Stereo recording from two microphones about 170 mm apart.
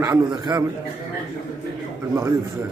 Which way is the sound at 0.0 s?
20° right (ahead or behind).